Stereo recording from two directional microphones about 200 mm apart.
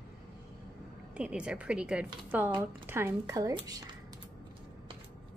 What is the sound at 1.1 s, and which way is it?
A woman's voice, 5° right (ahead or behind).